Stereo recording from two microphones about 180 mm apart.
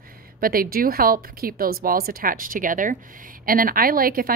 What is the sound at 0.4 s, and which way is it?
A woman's voice, 55° right (ahead or behind).